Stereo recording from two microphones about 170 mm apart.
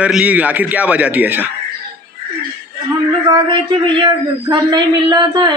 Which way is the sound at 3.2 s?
25° right (ahead or behind).